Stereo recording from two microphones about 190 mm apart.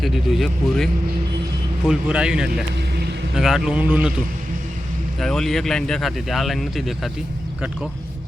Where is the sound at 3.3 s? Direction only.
Centre (ahead or behind).